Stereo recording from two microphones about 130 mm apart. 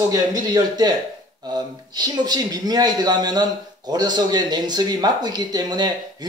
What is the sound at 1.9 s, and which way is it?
A man's voice, 30° right (ahead or behind).